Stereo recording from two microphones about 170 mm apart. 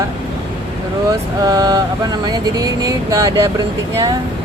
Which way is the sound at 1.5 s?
20° right (ahead or behind).